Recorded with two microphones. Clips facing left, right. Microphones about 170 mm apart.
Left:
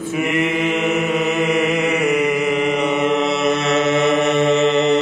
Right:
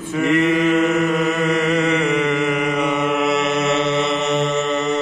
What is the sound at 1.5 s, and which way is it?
Mantra, 5° left (ahead or behind).